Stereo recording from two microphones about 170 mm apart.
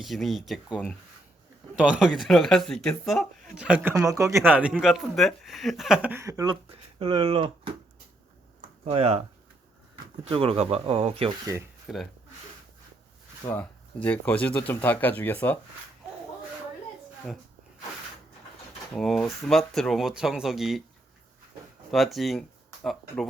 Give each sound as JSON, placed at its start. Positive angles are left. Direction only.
{"t": 0.0, "sound": "speech", "side_deg": 0}
{"t": 1.7, "sound": "speech", "side_deg": -5}
{"t": 8.8, "sound": "speech", "side_deg": -40}
{"t": 10.2, "sound": "speech", "side_deg": -35}
{"t": 11.9, "sound": "speech", "side_deg": 0}
{"t": 13.5, "sound": "speech", "side_deg": 10}
{"t": 18.9, "sound": "speech", "side_deg": 0}
{"t": 21.9, "sound": "speech", "side_deg": 0}